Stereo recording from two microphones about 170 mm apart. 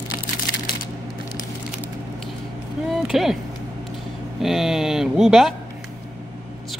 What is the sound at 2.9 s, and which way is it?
Speech, centre (ahead or behind).